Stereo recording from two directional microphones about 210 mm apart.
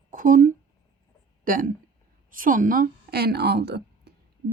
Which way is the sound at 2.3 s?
40° right (ahead or behind).